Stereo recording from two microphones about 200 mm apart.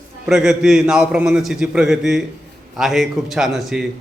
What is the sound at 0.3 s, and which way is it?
A man's voice, centre (ahead or behind).